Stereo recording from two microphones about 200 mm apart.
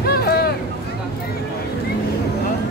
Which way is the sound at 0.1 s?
50° left (ahead or behind).